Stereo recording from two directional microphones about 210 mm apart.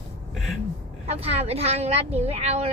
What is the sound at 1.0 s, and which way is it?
Speech, 30° right (ahead or behind).